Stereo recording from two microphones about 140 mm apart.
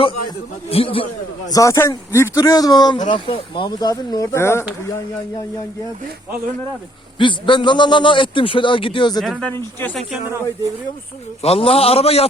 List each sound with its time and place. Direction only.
0.7 s a man's voice: 40° left (ahead or behind)
1.5 s speech: 25° left (ahead or behind)
7.2 s a man's voice: 35° left (ahead or behind)
9.4 s speech: 15° left (ahead or behind)
11.4 s a man's voice: 45° left (ahead or behind)